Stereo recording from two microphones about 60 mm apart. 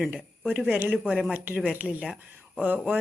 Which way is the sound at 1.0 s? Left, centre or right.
Centre.